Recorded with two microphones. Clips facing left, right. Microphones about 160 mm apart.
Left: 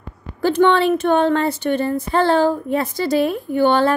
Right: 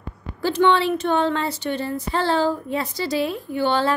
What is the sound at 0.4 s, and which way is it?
A woman's voice, 50° left (ahead or behind).